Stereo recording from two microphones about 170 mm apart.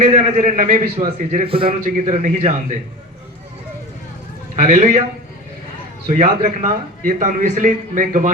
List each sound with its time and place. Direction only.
0.0 s a man's voice: 40° right (ahead or behind)
1.5 s a man's voice: 30° right (ahead or behind)
1.8 s a man's voice: 50° right (ahead or behind)
4.5 s a man's voice: 45° right (ahead or behind)
6.1 s a man's voice: 45° right (ahead or behind)